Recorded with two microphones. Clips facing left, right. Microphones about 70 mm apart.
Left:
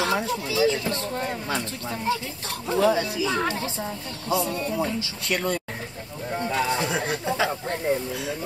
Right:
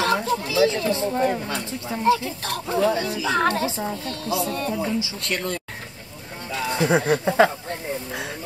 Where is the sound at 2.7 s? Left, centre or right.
Centre.